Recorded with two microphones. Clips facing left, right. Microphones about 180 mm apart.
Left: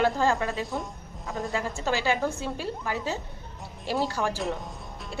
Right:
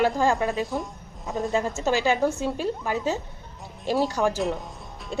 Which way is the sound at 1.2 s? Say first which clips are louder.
Right 5 dB; 20° right (ahead or behind).